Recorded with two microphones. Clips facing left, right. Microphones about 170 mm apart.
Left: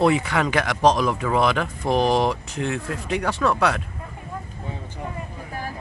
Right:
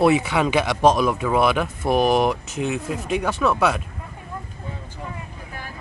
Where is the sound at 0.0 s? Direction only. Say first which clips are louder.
Right 2 dB; 15° right (ahead or behind).